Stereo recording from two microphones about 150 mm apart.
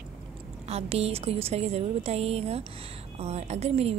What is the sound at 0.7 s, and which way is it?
A woman's voice, 45° right (ahead or behind).